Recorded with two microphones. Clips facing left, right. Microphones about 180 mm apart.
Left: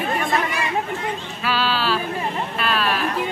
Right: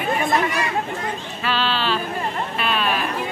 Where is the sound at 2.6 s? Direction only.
Centre (ahead or behind).